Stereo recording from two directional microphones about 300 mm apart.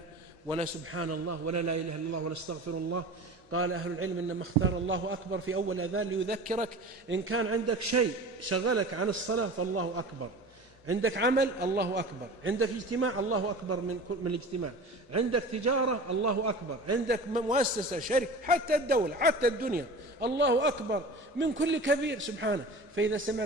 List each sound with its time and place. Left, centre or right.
0.9 s a man's voice: right
3.5 s a man's voice: right
6.2 s a man's voice: right
7.1 s a man's voice: right
7.8 s a man's voice: right
17.1 s a man's voice: right